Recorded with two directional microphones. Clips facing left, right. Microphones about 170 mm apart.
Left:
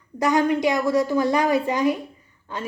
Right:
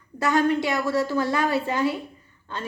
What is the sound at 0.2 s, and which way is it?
A woman's voice, 15° left (ahead or behind).